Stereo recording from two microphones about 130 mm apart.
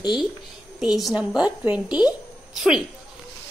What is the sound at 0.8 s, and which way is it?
A woman's voice, 5° right (ahead or behind).